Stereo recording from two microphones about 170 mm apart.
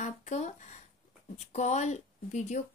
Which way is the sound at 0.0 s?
45° left (ahead or behind).